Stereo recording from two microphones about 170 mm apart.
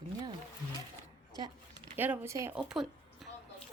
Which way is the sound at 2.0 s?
10° right (ahead or behind).